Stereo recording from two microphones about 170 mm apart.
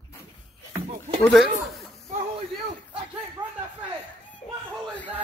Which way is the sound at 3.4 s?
25° right (ahead or behind).